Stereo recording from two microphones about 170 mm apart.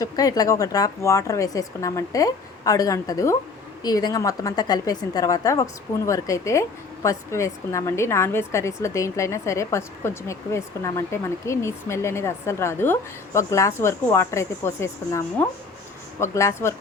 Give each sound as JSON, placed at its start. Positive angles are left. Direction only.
{"t": 0.0, "sound": "speech", "side_deg": 20}